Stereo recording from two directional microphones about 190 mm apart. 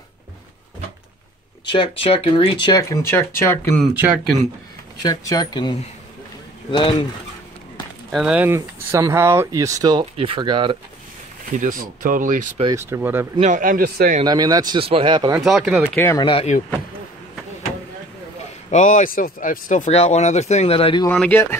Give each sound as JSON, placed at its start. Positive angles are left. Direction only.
{"t": 1.7, "sound": "speech", "side_deg": 30}
{"t": 3.9, "sound": "speech", "side_deg": -10}
{"t": 5.0, "sound": "speech", "side_deg": 20}
{"t": 8.1, "sound": "speech", "side_deg": -5}
{"t": 11.5, "sound": "speech", "side_deg": -45}
{"t": 12.6, "sound": "speech", "side_deg": -15}
{"t": 13.4, "sound": "speech", "side_deg": -45}
{"t": 14.2, "sound": "speech", "side_deg": -20}
{"t": 15.5, "sound": "speech", "side_deg": 0}
{"t": 16.2, "sound": "speech", "side_deg": 25}
{"t": 18.7, "sound": "speech", "side_deg": 40}
{"t": 21.1, "sound": "speech", "side_deg": 10}